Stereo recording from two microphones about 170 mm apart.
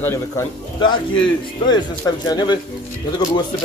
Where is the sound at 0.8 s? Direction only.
25° left (ahead or behind).